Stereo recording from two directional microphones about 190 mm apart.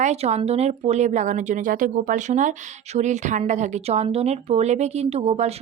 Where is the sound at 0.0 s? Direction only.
35° right (ahead or behind).